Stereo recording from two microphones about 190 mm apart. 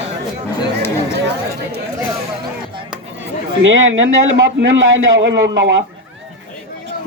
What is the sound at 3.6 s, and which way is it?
A man's voice, 85° right.